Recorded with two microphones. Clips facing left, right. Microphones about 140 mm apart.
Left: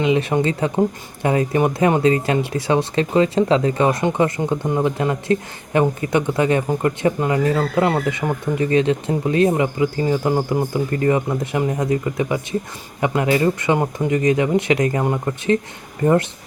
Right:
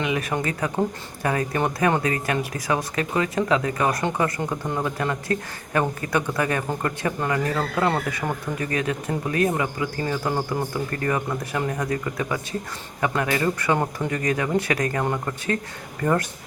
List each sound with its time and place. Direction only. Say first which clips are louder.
0.0 s speech: left 7 dB; 25° left (ahead or behind)